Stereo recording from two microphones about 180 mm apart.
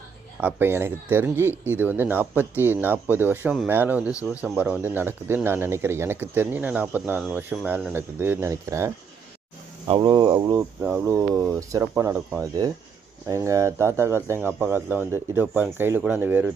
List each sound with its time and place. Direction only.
0.4 s speech: 10° right (ahead or behind)